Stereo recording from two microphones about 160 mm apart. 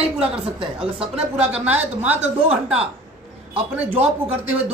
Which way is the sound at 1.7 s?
10° right (ahead or behind).